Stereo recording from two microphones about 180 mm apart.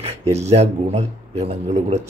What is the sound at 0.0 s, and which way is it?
A man's voice, 35° right (ahead or behind).